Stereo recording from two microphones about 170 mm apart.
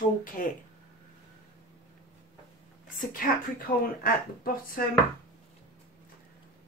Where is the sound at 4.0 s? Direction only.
60° left (ahead or behind).